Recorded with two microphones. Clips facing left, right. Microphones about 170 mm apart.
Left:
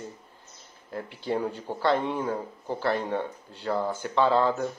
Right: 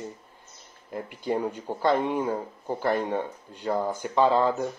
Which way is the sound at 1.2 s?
10° right (ahead or behind).